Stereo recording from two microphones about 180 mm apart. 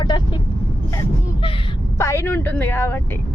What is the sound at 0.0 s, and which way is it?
Speech, 25° left (ahead or behind).